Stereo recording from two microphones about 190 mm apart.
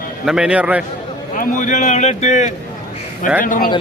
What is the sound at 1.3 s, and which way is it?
A man's voice, 45° left (ahead or behind).